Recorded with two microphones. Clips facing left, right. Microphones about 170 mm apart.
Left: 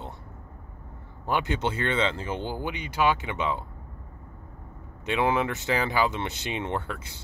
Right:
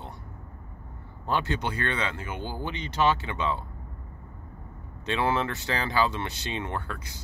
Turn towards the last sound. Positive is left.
turn(degrees=25)  # may be behind; listen again after turning